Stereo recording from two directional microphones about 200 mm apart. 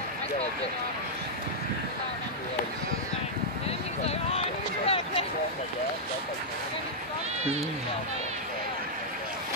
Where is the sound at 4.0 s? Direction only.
30° left (ahead or behind).